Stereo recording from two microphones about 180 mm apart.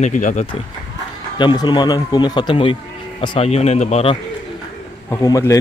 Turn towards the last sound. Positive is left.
turn(degrees=20)  # may be behind; listen again after turning